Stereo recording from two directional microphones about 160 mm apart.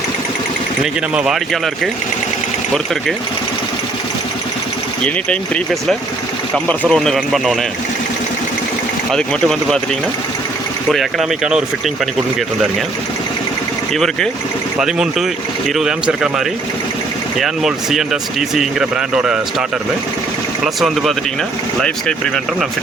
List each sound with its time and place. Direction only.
1.1 s speech: 5° right (ahead or behind)
5.0 s speech: 5° left (ahead or behind)
6.8 s speech: 5° left (ahead or behind)
9.1 s speech: 5° left (ahead or behind)
10.9 s speech: centre (ahead or behind)
13.9 s speech: 5° left (ahead or behind)
17.3 s speech: centre (ahead or behind)
21.8 s speech: 5° left (ahead or behind)